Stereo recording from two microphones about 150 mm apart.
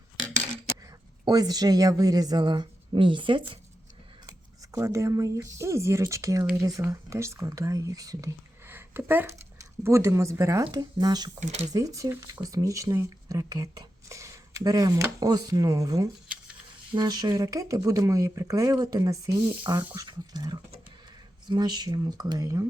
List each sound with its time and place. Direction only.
1.2 s speech: 25° right (ahead or behind)
4.3 s speech: 20° right (ahead or behind)
11.3 s speech: 50° right (ahead or behind)
11.7 s speech: 25° right (ahead or behind)